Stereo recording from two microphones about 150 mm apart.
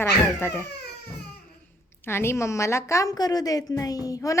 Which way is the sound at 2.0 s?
15° left (ahead or behind).